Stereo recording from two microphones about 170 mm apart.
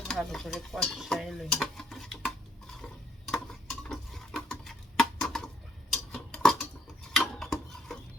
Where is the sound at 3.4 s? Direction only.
Centre (ahead or behind).